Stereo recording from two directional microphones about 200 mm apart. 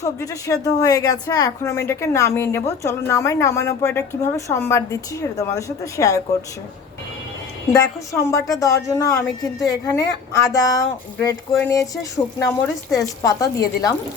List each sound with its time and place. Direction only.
0.0 s speech: 15° left (ahead or behind)
7.7 s speech: 15° left (ahead or behind)